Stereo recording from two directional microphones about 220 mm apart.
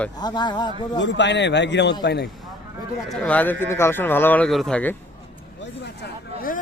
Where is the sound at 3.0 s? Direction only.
5° left (ahead or behind).